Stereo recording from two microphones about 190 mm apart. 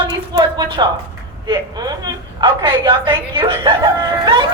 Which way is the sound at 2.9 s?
25° right (ahead or behind).